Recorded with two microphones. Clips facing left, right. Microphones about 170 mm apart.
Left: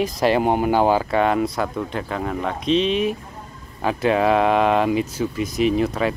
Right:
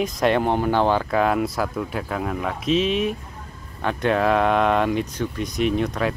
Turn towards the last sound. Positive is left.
turn(degrees=0)  # may be behind; listen again after turning